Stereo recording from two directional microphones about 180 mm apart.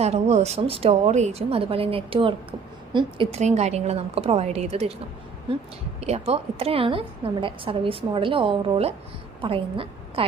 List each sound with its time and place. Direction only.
0.0 s a woman's voice: 35° right (ahead or behind)
3.3 s a woman's voice: 40° right (ahead or behind)
6.0 s a woman's voice: 35° right (ahead or behind)